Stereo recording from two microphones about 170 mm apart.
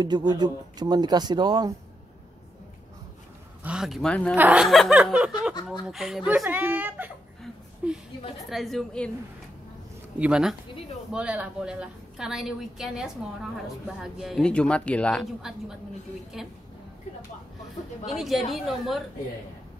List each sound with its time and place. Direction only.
0.0 s speech: 25° right (ahead or behind)
3.6 s a woman's voice: 5° right (ahead or behind)
4.4 s a woman's voice: 5° right (ahead or behind)
10.1 s a woman's voice: 5° right (ahead or behind)
18.1 s a woman's voice: centre (ahead or behind)